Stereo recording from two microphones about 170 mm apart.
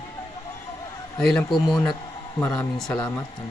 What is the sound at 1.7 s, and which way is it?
Speech, 25° left (ahead or behind).